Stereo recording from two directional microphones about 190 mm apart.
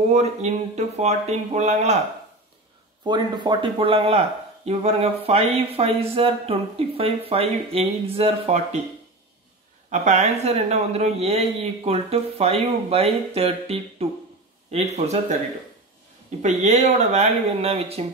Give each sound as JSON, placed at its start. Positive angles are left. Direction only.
{"t": 0.1, "sound": "speech", "side_deg": -35}
{"t": 3.0, "sound": "speech", "side_deg": -25}
{"t": 9.8, "sound": "speech", "side_deg": -35}
{"t": 16.4, "sound": "speech", "side_deg": -35}